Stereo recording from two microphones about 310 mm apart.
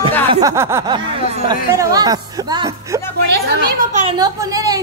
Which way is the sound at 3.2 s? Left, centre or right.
Right.